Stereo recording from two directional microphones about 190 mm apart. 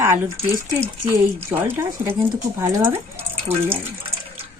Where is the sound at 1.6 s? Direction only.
10° right (ahead or behind).